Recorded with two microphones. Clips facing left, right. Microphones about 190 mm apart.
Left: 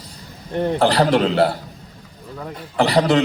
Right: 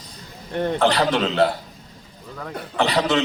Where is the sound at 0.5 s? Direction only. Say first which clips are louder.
Left 2 dB; 10° left (ahead or behind).